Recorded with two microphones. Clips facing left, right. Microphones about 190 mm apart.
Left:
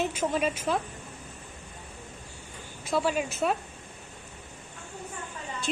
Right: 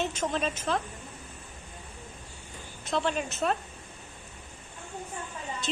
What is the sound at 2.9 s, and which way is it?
Speech, 5° left (ahead or behind).